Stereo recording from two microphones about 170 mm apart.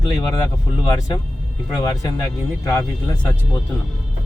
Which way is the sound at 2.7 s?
15° left (ahead or behind).